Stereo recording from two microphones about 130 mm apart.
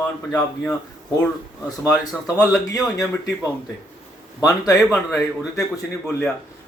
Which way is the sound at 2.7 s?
Centre (ahead or behind).